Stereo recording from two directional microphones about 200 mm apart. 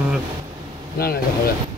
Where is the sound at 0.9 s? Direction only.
50° left (ahead or behind).